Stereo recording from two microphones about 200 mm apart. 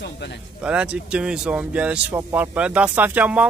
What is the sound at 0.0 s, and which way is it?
Speech, 60° left (ahead or behind).